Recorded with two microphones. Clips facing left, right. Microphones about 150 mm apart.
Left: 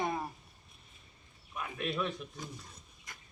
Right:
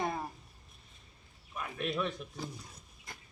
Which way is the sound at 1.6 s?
Centre (ahead or behind).